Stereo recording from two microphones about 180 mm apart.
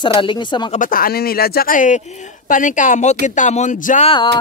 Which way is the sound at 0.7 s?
50° left (ahead or behind).